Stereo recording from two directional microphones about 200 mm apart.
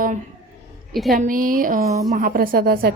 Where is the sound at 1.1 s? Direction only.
45° right (ahead or behind).